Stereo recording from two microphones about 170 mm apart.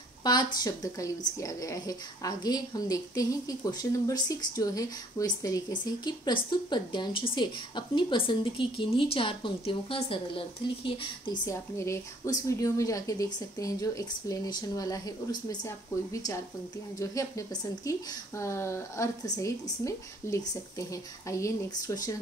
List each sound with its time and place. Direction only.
0.2 s a woman's voice: 25° left (ahead or behind)